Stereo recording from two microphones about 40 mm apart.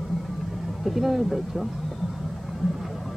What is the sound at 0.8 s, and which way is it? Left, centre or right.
Speech, centre.